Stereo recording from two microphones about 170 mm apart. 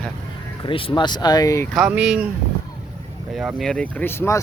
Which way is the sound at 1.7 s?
5° right (ahead or behind).